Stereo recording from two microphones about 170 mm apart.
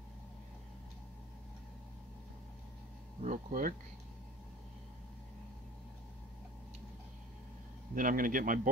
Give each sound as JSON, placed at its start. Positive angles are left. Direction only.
{"t": 3.2, "sound": "a man's voice", "side_deg": -50}
{"t": 7.9, "sound": "a man's voice", "side_deg": -55}